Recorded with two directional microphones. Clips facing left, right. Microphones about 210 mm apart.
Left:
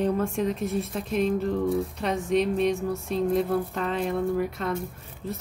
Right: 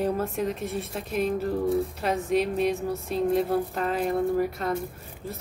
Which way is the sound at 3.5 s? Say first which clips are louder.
Right 1 dB; 35° right (ahead or behind).